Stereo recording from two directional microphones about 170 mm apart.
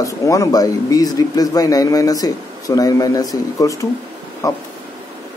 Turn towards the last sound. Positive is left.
turn(degrees=20)  # may be behind; listen again after turning